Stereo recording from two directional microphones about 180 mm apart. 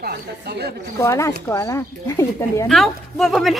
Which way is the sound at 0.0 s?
65° right (ahead or behind).